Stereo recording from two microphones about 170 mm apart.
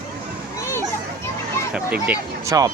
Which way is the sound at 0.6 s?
15° left (ahead or behind).